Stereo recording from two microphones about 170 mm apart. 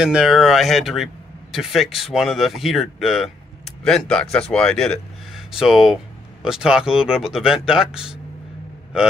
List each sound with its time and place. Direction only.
0.0 s speech: 5° right (ahead or behind)